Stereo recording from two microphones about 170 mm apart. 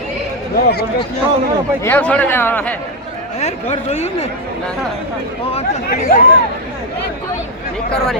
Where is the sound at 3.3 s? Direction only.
40° left (ahead or behind).